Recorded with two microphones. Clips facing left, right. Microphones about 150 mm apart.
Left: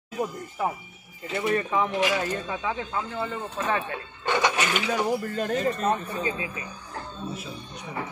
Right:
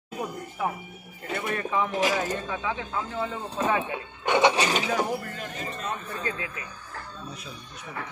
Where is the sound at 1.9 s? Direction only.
40° right (ahead or behind).